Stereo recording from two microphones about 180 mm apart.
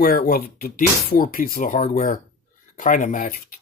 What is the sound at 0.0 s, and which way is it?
Speech, 55° left (ahead or behind).